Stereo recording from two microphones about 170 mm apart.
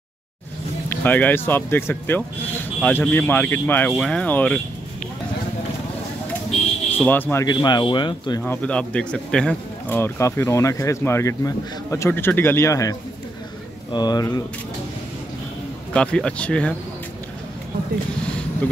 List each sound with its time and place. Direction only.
0.8 s speech: 10° left (ahead or behind)
7.0 s speech: 10° left (ahead or behind)
7.4 s speech: 25° left (ahead or behind)
8.4 s speech: 10° left (ahead or behind)
13.9 s speech: 25° left (ahead or behind)
15.9 s speech: 5° left (ahead or behind)